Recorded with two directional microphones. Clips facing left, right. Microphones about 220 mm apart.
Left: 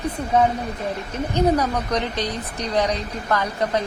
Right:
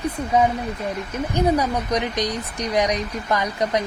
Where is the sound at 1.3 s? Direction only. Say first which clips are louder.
Left 1 dB; 10° right (ahead or behind).